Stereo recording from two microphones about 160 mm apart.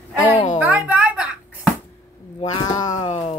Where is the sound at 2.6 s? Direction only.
25° left (ahead or behind).